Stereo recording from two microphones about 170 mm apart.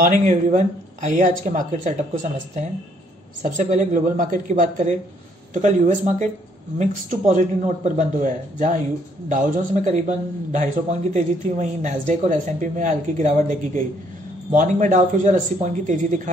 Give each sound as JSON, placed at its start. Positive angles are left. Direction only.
{"t": 0.0, "sound": "a man's voice", "side_deg": -50}
{"t": 3.4, "sound": "a man's voice", "side_deg": -45}